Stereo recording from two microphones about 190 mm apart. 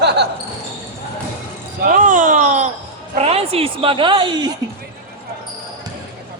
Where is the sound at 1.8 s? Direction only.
40° right (ahead or behind); by 4.6 s 20° right (ahead or behind).